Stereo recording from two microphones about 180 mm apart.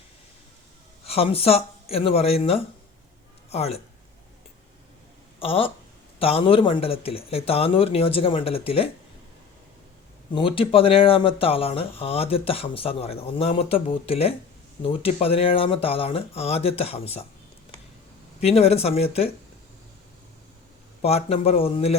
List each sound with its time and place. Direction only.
1.0 s speech: 35° left (ahead or behind)
5.4 s speech: 30° left (ahead or behind)
10.3 s speech: 30° left (ahead or behind)
18.3 s speech: 35° left (ahead or behind)
21.0 s speech: 35° left (ahead or behind)